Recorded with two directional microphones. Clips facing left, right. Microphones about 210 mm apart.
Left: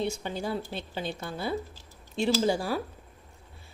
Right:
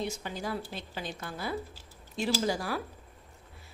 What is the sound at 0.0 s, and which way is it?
A woman's voice, 30° left (ahead or behind).